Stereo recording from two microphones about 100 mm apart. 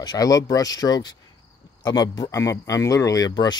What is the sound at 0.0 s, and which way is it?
Speech, 40° left (ahead or behind).